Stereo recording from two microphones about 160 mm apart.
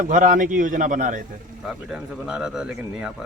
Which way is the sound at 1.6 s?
5° right (ahead or behind).